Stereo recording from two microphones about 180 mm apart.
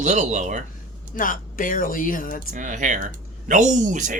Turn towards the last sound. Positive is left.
turn(degrees=-45)  # may be behind; listen again after turning